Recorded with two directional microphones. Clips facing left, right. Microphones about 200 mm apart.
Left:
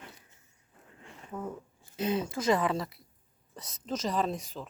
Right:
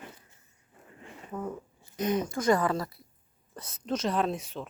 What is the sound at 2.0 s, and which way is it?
Speech, 25° left (ahead or behind).